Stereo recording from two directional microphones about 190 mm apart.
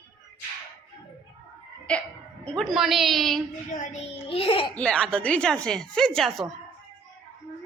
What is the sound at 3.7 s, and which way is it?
Speech, 35° left (ahead or behind).